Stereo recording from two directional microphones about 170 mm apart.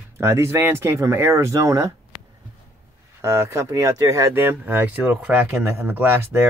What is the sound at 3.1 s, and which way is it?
Speech, 15° right (ahead or behind).